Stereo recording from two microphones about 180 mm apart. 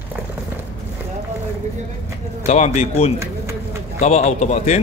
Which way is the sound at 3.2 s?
15° right (ahead or behind).